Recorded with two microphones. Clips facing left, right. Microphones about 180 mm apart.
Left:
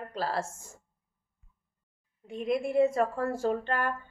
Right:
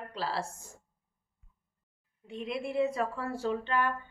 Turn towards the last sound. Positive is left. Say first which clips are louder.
# left 1 dB
turn(degrees=45)  # may be behind; listen again after turning